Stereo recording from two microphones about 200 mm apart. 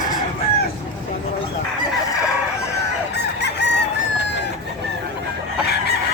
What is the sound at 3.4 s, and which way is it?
Chicken, 60° left (ahead or behind).